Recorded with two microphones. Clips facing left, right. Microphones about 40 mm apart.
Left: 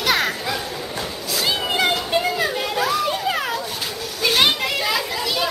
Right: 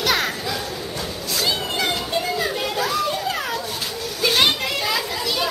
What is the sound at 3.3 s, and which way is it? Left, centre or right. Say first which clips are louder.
Children playing: left 2 dB; centre.